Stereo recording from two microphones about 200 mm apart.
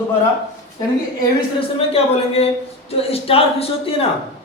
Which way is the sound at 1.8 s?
30° left (ahead or behind).